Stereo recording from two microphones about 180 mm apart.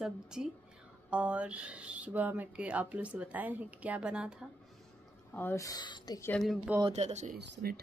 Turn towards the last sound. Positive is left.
turn(degrees=-65)  # may be behind; listen again after turning